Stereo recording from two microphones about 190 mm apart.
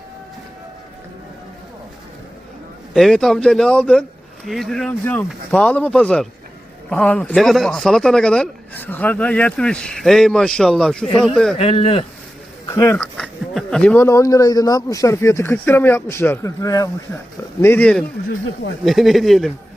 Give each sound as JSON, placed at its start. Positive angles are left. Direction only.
{"t": 2.9, "sound": "speech", "side_deg": 0}
{"t": 11.5, "sound": "speech", "side_deg": 30}
{"t": 12.6, "sound": "speech", "side_deg": 15}
{"t": 13.1, "sound": "speech", "side_deg": 0}